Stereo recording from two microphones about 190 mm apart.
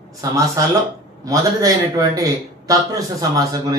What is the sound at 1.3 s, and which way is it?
A man's voice, 20° right (ahead or behind).